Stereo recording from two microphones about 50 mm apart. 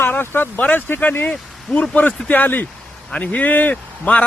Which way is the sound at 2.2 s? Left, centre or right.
Left.